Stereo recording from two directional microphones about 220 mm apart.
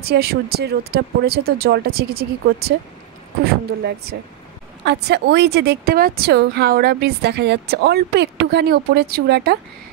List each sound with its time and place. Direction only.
0.1 s speech: 45° right (ahead or behind)